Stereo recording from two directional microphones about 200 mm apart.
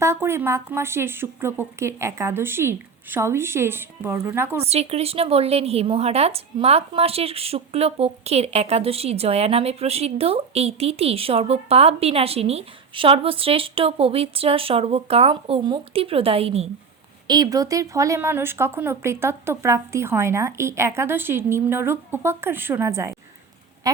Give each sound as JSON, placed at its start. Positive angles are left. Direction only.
{"t": 0.0, "sound": "a woman's voice", "side_deg": -15}
{"t": 4.6, "sound": "a woman's voice", "side_deg": -30}
{"t": 23.9, "sound": "quack", "side_deg": -20}